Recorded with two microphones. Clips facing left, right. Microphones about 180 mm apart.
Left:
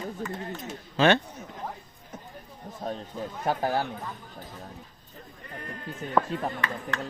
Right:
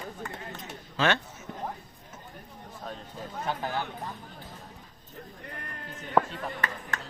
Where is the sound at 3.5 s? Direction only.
45° left (ahead or behind).